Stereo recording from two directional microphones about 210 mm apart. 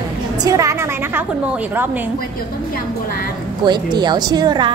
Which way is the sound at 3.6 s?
20° right (ahead or behind).